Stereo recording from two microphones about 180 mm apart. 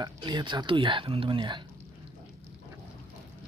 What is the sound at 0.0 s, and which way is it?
Speech, 25° right (ahead or behind).